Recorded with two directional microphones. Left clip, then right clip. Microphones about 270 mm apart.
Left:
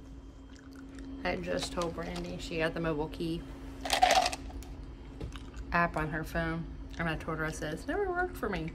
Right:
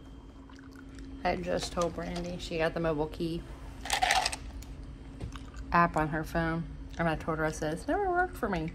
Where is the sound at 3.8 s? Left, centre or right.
Centre.